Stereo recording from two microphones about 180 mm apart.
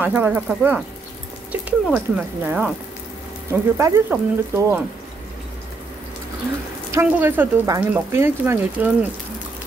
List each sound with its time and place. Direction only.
0.0 s speech: 10° right (ahead or behind)
3.7 s speech: 15° right (ahead or behind)
6.9 s speech: 10° right (ahead or behind)